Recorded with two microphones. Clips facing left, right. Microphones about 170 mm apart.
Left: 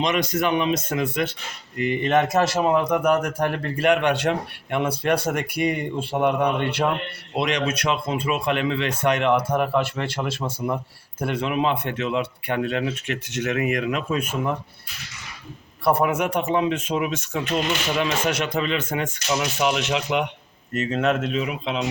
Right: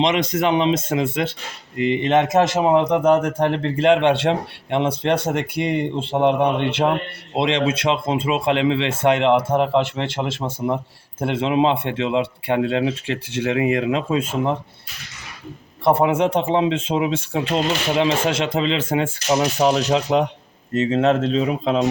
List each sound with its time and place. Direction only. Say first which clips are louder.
0.0 s a man's voice: right 3 dB; 25° right (ahead or behind)
15.8 s a man's voice: right 4 dB; 20° right (ahead or behind); by 21.8 s 40° right (ahead or behind)